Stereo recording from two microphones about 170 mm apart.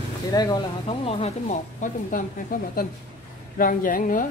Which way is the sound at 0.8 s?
35° left (ahead or behind).